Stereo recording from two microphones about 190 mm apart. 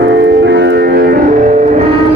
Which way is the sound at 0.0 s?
65° right (ahead or behind).